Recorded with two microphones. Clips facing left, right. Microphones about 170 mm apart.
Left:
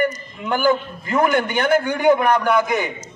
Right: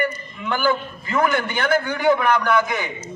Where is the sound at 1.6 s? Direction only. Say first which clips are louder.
Left 2 dB; 20° left (ahead or behind).